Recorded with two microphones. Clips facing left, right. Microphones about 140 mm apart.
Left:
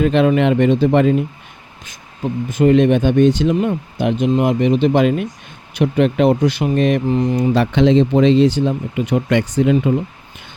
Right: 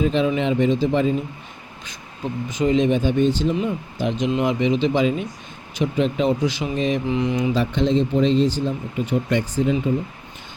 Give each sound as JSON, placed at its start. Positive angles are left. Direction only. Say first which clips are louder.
{"t": 0.0, "sound": "speech", "louder": "left 6 dB", "side_deg": 65}
{"t": 2.5, "sound": "speech", "louder": "left 6 dB", "side_deg": 55}
{"t": 7.1, "sound": "speech", "louder": "left 5 dB", "side_deg": 40}
{"t": 7.5, "sound": "speech", "louder": "left 9 dB", "side_deg": 80}